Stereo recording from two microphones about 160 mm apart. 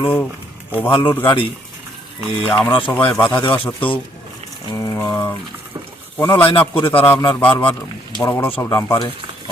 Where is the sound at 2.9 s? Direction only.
10° left (ahead or behind).